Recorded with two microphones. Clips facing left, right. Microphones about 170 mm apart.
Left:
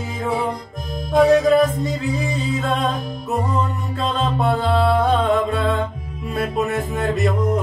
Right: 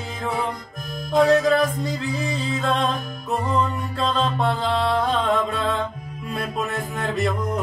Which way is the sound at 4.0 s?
5° left (ahead or behind).